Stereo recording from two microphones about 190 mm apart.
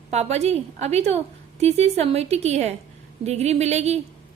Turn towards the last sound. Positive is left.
turn(degrees=-35)  # may be behind; listen again after turning